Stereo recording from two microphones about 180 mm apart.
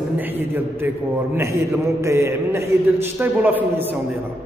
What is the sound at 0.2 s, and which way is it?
A man's voice, 10° right (ahead or behind).